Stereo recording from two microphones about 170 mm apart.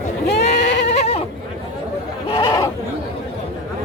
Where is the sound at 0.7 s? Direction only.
80° left.